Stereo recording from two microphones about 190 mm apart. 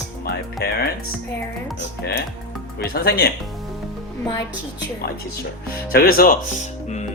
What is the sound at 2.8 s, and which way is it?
Speech, 55° left (ahead or behind).